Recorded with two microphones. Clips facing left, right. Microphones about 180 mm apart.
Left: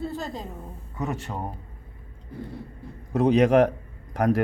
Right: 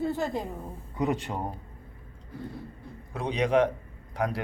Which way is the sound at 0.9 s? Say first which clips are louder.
Right 2 dB; 15° right (ahead or behind).